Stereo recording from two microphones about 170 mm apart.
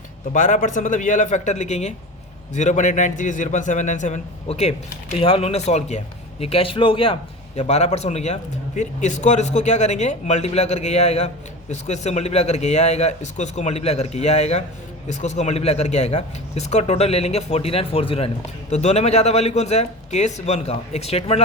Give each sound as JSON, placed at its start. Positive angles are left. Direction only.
{"t": 0.3, "sound": "a man's voice", "side_deg": 50}